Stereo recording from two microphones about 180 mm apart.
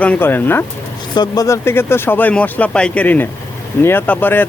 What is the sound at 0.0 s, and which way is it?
Speech, 10° left (ahead or behind).